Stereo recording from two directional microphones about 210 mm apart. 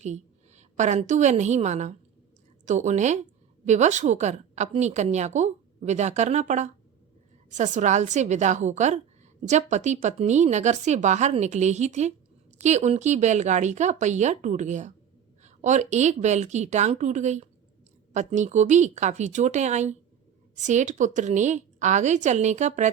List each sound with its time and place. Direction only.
0.0 s a woman's voice: 35° right (ahead or behind)